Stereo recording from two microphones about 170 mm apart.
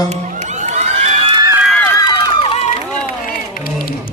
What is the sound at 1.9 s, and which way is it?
Run, 25° left (ahead or behind).